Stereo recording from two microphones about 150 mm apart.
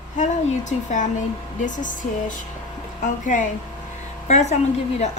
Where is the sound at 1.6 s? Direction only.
60° left (ahead or behind).